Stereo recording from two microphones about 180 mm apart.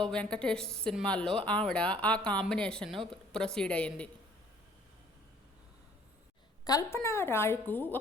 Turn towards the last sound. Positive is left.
turn(degrees=10)  # may be behind; listen again after turning